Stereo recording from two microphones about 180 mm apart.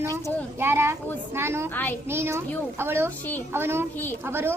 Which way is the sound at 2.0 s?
15° right (ahead or behind).